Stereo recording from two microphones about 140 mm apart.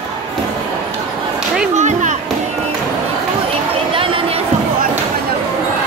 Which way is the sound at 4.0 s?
40° right (ahead or behind).